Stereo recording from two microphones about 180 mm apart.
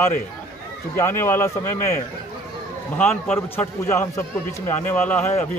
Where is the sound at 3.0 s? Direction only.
10° left (ahead or behind).